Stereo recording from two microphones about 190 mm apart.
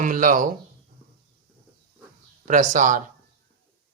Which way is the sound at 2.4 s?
40° right (ahead or behind).